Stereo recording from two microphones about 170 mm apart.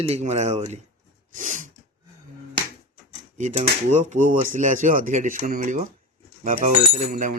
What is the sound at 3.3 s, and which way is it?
Speech, 45° right (ahead or behind).